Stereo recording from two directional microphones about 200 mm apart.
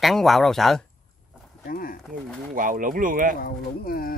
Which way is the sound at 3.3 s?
45° left (ahead or behind).